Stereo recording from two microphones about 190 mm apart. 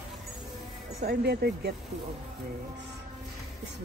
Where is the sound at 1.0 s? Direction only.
60° right (ahead or behind).